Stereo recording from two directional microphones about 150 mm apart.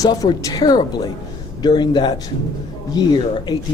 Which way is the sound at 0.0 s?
25° left (ahead or behind).